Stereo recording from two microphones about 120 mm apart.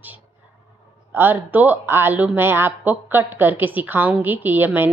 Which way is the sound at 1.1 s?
15° right (ahead or behind).